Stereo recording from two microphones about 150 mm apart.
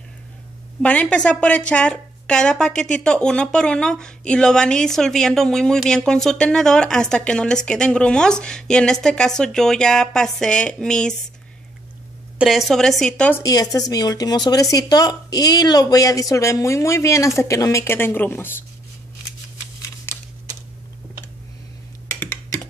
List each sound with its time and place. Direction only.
0.8 s a woman's voice: 10° left (ahead or behind)
12.4 s a woman's voice: centre (ahead or behind)
13.3 s speech: 25° left (ahead or behind)
20.1 s a sound: 15° left (ahead or behind)